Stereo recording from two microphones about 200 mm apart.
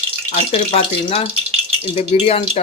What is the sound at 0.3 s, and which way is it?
Speech, 30° left (ahead or behind).